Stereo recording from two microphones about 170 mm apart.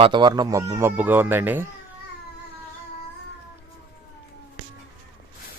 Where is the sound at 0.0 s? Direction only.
25° right (ahead or behind); by 1.7 s 10° right (ahead or behind).